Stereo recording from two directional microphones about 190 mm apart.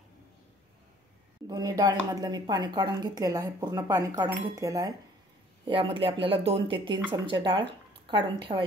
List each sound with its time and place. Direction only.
1.5 s speech: 20° right (ahead or behind)
5.7 s speech: 30° right (ahead or behind)